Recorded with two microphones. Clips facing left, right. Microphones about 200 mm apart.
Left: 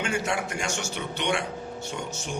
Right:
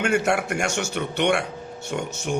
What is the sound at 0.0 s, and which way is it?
Speech, 65° right (ahead or behind).